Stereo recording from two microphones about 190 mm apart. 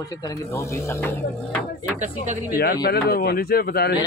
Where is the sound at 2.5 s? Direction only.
55° left (ahead or behind).